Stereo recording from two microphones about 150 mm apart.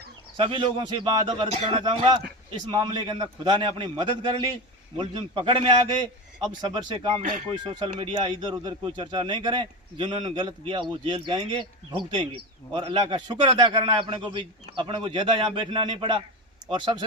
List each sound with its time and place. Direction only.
0.3 s speech: 35° right (ahead or behind)